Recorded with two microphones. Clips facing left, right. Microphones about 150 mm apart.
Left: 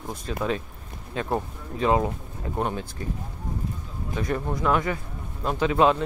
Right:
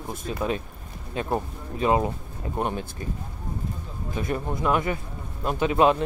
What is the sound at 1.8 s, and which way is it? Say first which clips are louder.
Speech: even; 15° right (ahead or behind).